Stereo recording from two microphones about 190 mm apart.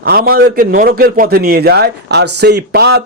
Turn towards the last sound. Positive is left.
turn(degrees=-60)  # may be behind; listen again after turning